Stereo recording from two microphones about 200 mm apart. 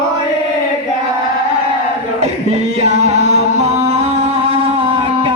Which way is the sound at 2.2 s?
35° right (ahead or behind).